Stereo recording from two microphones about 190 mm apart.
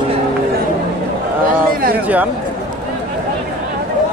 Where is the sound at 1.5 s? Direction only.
50° right (ahead or behind).